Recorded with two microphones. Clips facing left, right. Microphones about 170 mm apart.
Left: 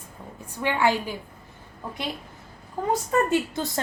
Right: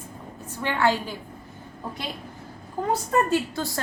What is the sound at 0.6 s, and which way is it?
Speech, 15° left (ahead or behind).